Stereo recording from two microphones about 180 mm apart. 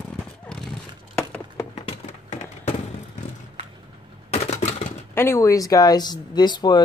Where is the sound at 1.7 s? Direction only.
35° left (ahead or behind).